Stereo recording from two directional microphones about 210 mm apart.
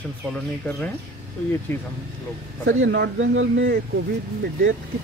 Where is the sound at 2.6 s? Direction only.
60° right (ahead or behind).